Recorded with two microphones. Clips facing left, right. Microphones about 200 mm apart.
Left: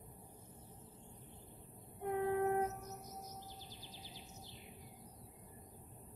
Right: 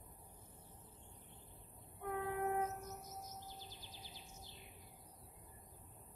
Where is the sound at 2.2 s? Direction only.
20° left (ahead or behind).